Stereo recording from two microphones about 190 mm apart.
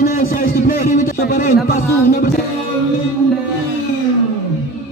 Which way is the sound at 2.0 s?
50° left (ahead or behind).